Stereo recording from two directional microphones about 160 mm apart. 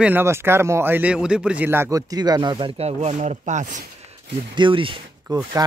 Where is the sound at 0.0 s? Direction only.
15° right (ahead or behind).